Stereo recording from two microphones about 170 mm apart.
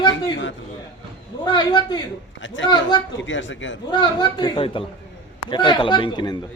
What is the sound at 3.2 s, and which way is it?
Speech, 90° left.